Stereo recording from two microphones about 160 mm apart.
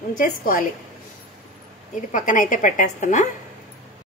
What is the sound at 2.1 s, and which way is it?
A woman's voice, 55° left (ahead or behind).